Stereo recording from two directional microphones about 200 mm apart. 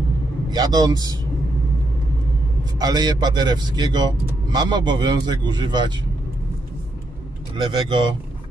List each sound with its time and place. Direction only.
0.5 s speech: 20° right (ahead or behind)
2.8 s speech: 20° right (ahead or behind)
7.5 s speech: 25° right (ahead or behind)